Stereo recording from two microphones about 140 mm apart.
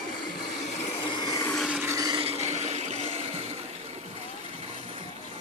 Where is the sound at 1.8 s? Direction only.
25° right (ahead or behind).